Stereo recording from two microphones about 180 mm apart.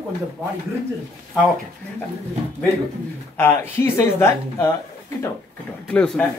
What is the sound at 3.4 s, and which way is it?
Speech, 15° left (ahead or behind).